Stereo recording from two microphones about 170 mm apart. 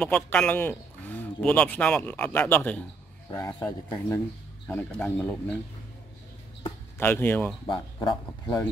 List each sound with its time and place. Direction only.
0.0 s speech: 10° left (ahead or behind)
7.0 s speech: 10° left (ahead or behind)
7.6 s speech: 30° left (ahead or behind)